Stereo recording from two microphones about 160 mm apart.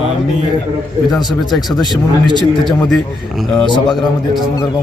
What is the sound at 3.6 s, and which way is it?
Speech, 30° left (ahead or behind).